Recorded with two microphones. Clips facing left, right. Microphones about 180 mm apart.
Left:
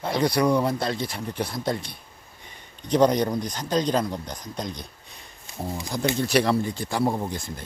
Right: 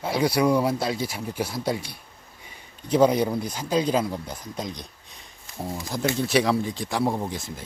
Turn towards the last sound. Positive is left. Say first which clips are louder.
# left 1 dB
turn(degrees=0)  # may be behind; listen again after turning